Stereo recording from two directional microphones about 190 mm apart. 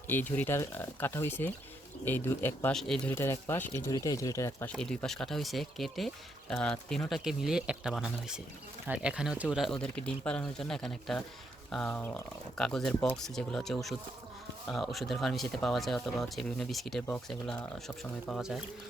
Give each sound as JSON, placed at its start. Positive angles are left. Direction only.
{"t": 0.1, "sound": "speech", "side_deg": 10}
{"t": 2.7, "sound": "speech", "side_deg": 0}
{"t": 3.1, "sound": "speech", "side_deg": 15}
{"t": 4.7, "sound": "speech", "side_deg": 5}